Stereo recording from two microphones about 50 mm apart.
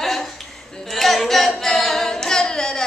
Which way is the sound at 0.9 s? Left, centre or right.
Centre.